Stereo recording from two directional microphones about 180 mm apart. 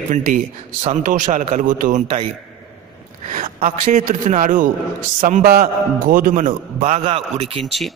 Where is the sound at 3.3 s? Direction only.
40° right (ahead or behind).